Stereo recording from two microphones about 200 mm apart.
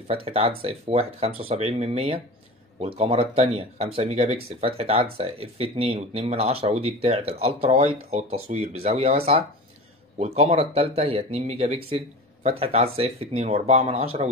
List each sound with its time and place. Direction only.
0.1 s speech: 30° right (ahead or behind)